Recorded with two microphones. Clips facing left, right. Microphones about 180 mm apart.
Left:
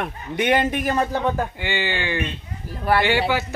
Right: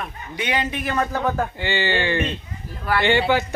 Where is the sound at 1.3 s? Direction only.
10° left (ahead or behind).